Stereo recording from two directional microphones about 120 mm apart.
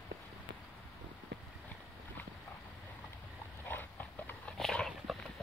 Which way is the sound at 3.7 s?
15° left (ahead or behind).